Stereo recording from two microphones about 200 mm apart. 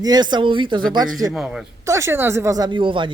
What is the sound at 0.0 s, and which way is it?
Speech, 20° right (ahead or behind).